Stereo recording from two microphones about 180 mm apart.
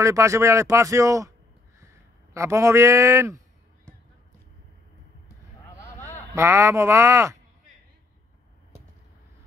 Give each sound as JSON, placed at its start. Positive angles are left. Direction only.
{"t": 0.0, "sound": "speech", "side_deg": -15}
{"t": 2.3, "sound": "speech", "side_deg": -15}
{"t": 6.3, "sound": "speech", "side_deg": -15}